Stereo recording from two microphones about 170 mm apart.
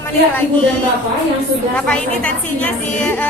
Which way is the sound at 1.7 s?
5° left (ahead or behind).